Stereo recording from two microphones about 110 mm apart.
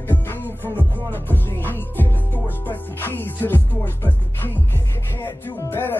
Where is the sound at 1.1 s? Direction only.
20° left (ahead or behind).